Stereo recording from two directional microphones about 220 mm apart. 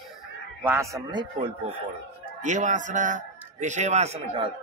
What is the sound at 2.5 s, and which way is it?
A man's voice, 35° right (ahead or behind).